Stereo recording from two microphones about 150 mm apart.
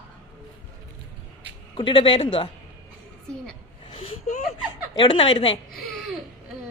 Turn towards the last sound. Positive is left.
turn(degrees=0)  # may be behind; listen again after turning